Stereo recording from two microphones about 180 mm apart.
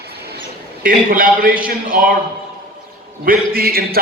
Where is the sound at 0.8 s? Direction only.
50° right (ahead or behind).